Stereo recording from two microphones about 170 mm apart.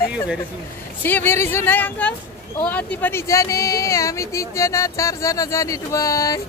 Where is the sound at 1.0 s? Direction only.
10° left (ahead or behind).